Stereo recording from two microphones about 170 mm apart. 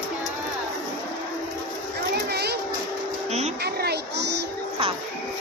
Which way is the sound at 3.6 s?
70° right (ahead or behind).